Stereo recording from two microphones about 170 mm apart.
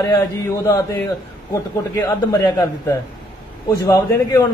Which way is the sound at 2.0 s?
20° left (ahead or behind).